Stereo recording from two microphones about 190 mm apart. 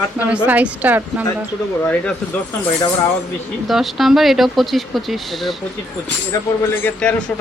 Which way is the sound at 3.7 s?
Centre (ahead or behind).